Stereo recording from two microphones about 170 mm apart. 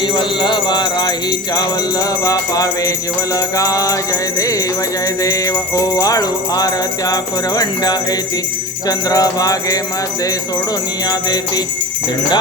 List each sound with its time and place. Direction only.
0.0 s jingle bell: 25° left (ahead or behind)
11.1 s jingle bell: 25° left (ahead or behind)